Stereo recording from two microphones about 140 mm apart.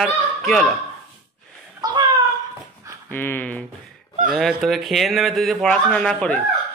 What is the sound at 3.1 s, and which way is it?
A man's voice, 15° left (ahead or behind).